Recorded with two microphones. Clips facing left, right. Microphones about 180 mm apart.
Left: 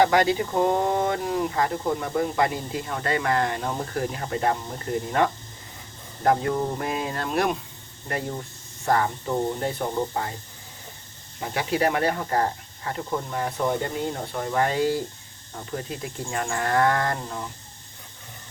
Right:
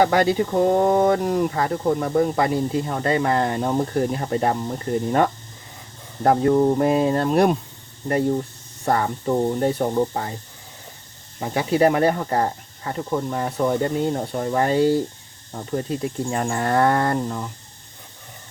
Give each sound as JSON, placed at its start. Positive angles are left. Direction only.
{"t": 0.0, "sound": "speech", "side_deg": -40}
{"t": 8.8, "sound": "speech", "side_deg": -35}
{"t": 11.3, "sound": "speech", "side_deg": -35}